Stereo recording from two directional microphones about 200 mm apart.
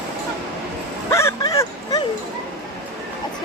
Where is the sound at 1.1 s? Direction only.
15° left (ahead or behind).